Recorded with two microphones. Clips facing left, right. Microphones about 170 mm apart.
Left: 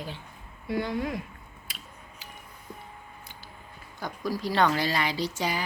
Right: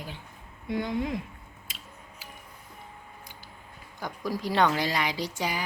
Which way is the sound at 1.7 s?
20° right (ahead or behind).